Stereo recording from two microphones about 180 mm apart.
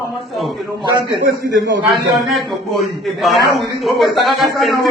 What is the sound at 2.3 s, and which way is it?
A man's voice, centre (ahead or behind).